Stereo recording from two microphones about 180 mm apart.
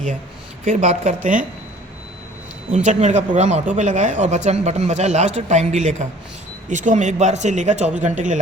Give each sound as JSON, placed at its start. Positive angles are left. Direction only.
{"t": 0.6, "sound": "speech", "side_deg": -40}
{"t": 2.7, "sound": "speech", "side_deg": -40}